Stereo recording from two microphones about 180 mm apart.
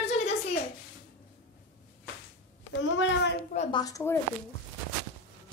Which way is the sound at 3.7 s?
20° left (ahead or behind).